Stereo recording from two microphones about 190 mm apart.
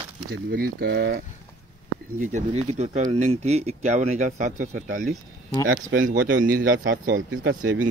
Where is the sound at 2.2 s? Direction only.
40° right (ahead or behind).